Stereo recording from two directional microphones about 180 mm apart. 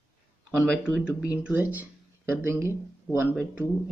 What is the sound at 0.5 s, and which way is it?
Speech, 5° right (ahead or behind).